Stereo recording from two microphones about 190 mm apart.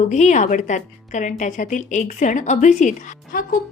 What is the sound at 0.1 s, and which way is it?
A woman's voice, 40° left (ahead or behind).